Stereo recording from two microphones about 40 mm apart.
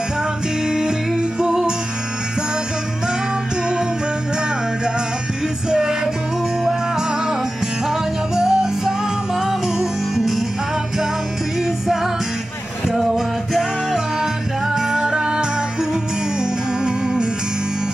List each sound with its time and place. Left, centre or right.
0.7 s music: centre
5.7 s music: centre
8.4 s music: centre
11.6 s music: centre
12.8 s a sound: centre
13.5 s music: centre